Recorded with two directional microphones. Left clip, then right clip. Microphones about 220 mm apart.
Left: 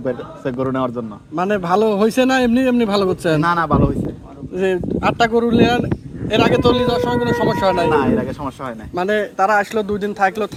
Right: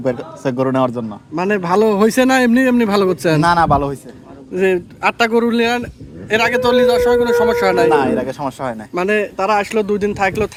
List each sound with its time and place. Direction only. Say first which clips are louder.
0.0 s a man's voice: right 3 dB; 55° right (ahead or behind)
1.4 s a man's voice: right 1 dB; 25° right (ahead or behind)
3.4 s speech: right 6 dB; 50° right (ahead or behind)
4.5 s a man's voice: right 3 dB; 30° right (ahead or behind)
7.9 s speech: right 2 dB; 45° right (ahead or behind)
9.0 s a man's voice: even; 25° right (ahead or behind)